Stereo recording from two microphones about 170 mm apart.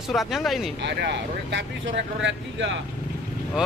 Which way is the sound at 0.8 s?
90° right.